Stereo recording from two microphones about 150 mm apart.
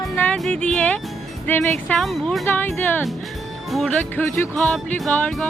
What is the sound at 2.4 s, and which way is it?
Speech, 15° left (ahead or behind).